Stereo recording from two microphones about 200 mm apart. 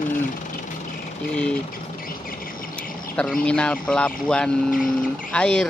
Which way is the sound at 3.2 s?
5° left (ahead or behind).